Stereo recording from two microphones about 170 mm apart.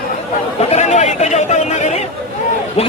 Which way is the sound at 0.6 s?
40° left (ahead or behind).